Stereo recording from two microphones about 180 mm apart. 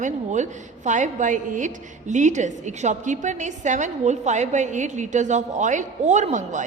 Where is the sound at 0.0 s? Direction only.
40° right (ahead or behind).